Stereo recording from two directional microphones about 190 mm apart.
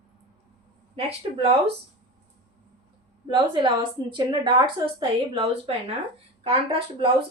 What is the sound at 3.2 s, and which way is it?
A woman's voice, 25° right (ahead or behind).